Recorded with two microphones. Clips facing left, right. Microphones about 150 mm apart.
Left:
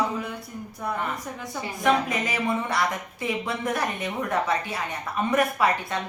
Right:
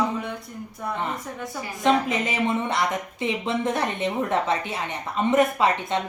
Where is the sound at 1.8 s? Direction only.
25° right (ahead or behind).